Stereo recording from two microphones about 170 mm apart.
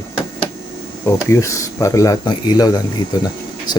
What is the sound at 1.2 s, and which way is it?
Speech, 15° left (ahead or behind).